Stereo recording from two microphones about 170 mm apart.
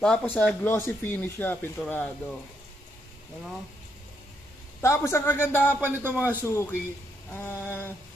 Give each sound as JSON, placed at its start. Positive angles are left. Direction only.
{"t": 0.0, "sound": "speech", "side_deg": 5}
{"t": 4.8, "sound": "speech", "side_deg": 15}
{"t": 5.8, "sound": "speech", "side_deg": -10}
{"t": 6.4, "sound": "speech", "side_deg": 15}